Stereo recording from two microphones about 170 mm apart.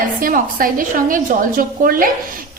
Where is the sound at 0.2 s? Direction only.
55° right (ahead or behind).